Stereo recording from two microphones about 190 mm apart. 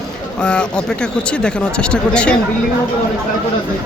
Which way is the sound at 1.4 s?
5° left (ahead or behind).